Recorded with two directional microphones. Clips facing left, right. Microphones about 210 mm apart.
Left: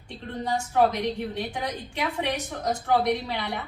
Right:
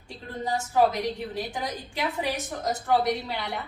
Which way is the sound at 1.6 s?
5° right (ahead or behind).